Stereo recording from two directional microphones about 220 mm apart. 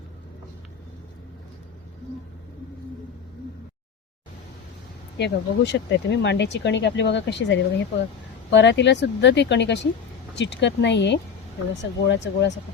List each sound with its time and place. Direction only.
5.1 s speech: 50° left (ahead or behind)